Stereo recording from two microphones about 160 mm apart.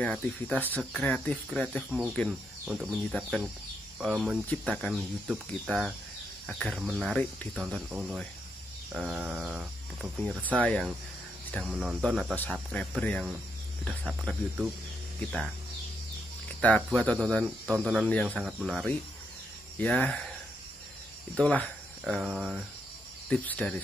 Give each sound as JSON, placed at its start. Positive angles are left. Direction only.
{"t": 0.0, "sound": "speech", "side_deg": 10}
{"t": 10.6, "sound": "speech", "side_deg": 5}
{"t": 16.6, "sound": "speech", "side_deg": 10}
{"t": 21.4, "sound": "speech", "side_deg": 10}
{"t": 23.3, "sound": "speech", "side_deg": 10}